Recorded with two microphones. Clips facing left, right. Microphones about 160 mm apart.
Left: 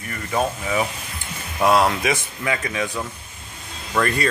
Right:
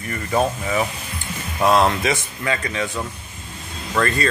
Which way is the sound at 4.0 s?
10° left (ahead or behind).